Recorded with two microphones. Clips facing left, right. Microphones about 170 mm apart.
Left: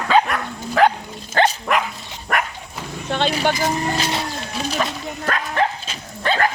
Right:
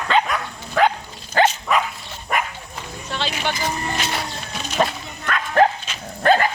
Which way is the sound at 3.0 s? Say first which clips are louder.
Left 6 dB; 55° left (ahead or behind).